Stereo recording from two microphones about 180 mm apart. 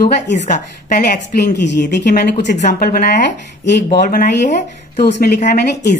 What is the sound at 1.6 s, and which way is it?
Speech, 65° left (ahead or behind).